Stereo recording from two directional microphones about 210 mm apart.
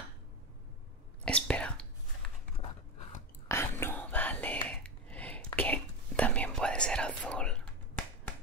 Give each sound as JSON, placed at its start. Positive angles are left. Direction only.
{"t": 1.2, "sound": "whispering", "side_deg": 5}
{"t": 3.4, "sound": "whispering", "side_deg": 10}